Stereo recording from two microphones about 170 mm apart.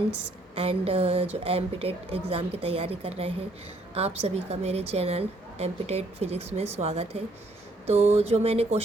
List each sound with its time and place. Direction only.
0.5 s a woman's voice: 35° right (ahead or behind)